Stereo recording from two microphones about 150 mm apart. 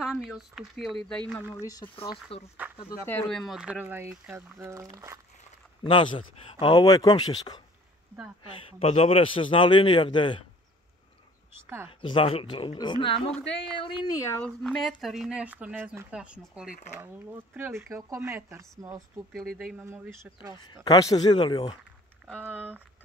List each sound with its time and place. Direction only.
0.0 s speech: 5° right (ahead or behind)
1.5 s speech: 25° left (ahead or behind)
2.3 s a man's voice: 40° left (ahead or behind)
3.1 s speech: 5° left (ahead or behind); by 5.2 s 25° right (ahead or behind)
5.9 s a man's voice: 35° left (ahead or behind)
8.7 s a man's voice: 40° left (ahead or behind)
12.0 s a man's voice: 35° left (ahead or behind)
13.8 s speech: 20° left (ahead or behind)
14.4 s speech: 5° left (ahead or behind); by 18.9 s 20° right (ahead or behind)
19.3 s speech: centre (ahead or behind)
19.8 s speech: 15° right (ahead or behind)
20.5 s speech: 30° left (ahead or behind)
22.4 s speech: 10° right (ahead or behind)